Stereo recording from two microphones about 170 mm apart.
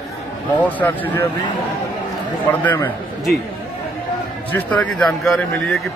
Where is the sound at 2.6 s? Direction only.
10° left (ahead or behind).